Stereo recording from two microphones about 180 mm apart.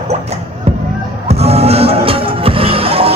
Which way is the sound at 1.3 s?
35° right (ahead or behind).